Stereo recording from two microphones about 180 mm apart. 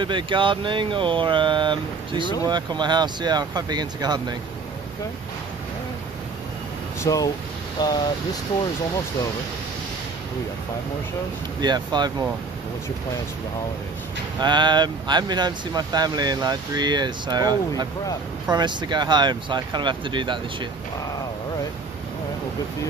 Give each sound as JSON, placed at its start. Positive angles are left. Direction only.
{"t": 0.0, "sound": "speech", "side_deg": -25}
{"t": 7.0, "sound": "speech", "side_deg": 20}
{"t": 11.6, "sound": "speech", "side_deg": -25}
{"t": 14.4, "sound": "speech", "side_deg": -25}